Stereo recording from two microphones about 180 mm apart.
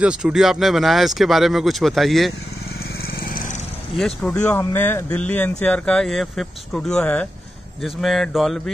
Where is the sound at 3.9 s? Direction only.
5° left (ahead or behind).